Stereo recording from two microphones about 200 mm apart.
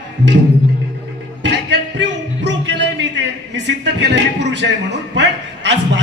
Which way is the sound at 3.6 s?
60° right (ahead or behind).